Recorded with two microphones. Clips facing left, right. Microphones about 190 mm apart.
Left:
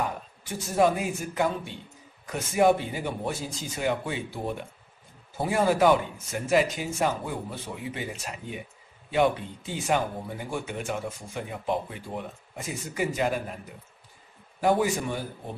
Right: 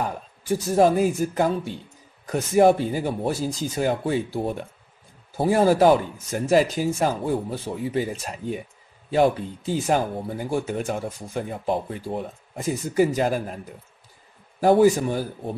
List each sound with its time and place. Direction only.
0.7 s speech: 35° right (ahead or behind)
14.6 s speech: 35° right (ahead or behind)